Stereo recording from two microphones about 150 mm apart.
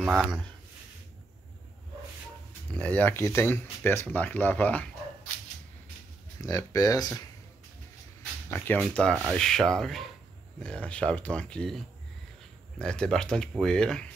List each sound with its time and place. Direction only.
0.0 s speech: 5° right (ahead or behind)
2.7 s speech: 10° left (ahead or behind)
6.4 s speech: 25° left (ahead or behind)
8.5 s speech: 15° left (ahead or behind)